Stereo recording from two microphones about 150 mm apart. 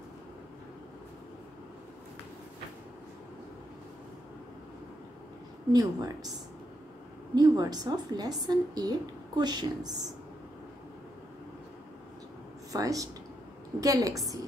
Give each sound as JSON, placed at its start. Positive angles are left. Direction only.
{"t": 5.7, "sound": "a woman's voice", "side_deg": -25}
{"t": 7.3, "sound": "a woman's voice", "side_deg": -25}
{"t": 12.7, "sound": "a woman's voice", "side_deg": -20}